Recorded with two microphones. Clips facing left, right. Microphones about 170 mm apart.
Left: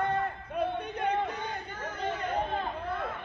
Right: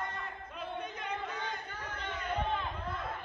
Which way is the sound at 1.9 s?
35° left (ahead or behind).